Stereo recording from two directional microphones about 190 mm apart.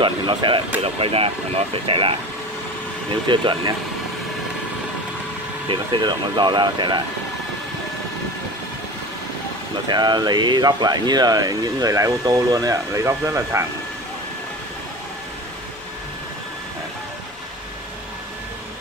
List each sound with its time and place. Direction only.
0.0 s speech: 25° right (ahead or behind)
5.7 s speech: 25° right (ahead or behind)
9.8 s speech: 20° right (ahead or behind)